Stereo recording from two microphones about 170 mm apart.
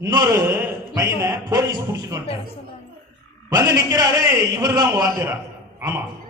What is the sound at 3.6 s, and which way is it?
A man's voice, 20° right (ahead or behind).